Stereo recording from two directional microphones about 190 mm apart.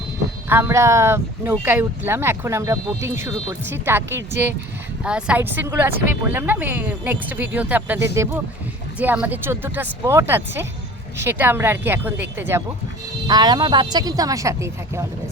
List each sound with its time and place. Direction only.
0.4 s speech: 10° right (ahead or behind)